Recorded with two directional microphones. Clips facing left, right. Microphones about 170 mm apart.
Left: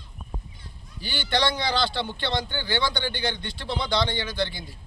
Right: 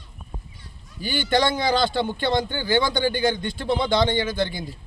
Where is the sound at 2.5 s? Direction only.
10° right (ahead or behind).